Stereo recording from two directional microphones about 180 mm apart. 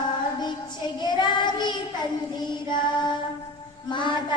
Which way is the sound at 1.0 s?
25° left (ahead or behind).